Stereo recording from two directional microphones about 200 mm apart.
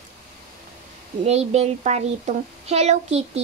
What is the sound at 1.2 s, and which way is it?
Speech, 35° right (ahead or behind).